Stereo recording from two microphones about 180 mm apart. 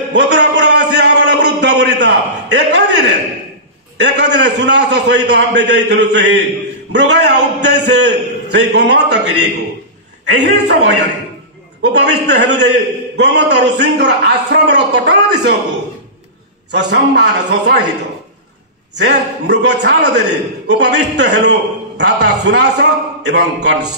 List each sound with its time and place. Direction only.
0.1 s a sound: 80° right
4.0 s a man's voice: 75° right (ahead or behind)
16.7 s a man's voice: 70° right (ahead or behind)
18.9 s a man's voice: 75° right (ahead or behind)